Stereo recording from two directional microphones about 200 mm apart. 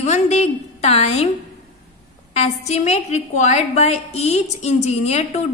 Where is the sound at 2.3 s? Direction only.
35° left (ahead or behind).